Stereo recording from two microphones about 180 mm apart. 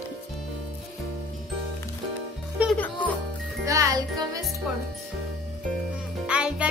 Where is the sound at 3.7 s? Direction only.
15° right (ahead or behind).